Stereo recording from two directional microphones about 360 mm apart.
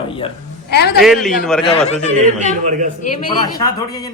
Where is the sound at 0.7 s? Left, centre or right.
Left.